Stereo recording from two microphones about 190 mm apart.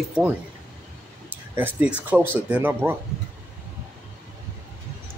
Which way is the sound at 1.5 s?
10° right (ahead or behind).